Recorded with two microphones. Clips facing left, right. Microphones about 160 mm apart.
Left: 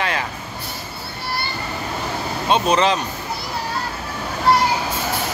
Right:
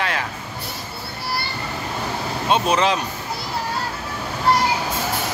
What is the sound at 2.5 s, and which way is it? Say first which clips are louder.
Speech: left 1 dB; 5° right (ahead or behind).